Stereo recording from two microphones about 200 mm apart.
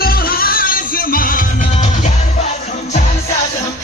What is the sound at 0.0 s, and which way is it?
Music, 50° left (ahead or behind).